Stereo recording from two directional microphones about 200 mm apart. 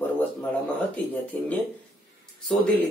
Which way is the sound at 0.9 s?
5° left (ahead or behind).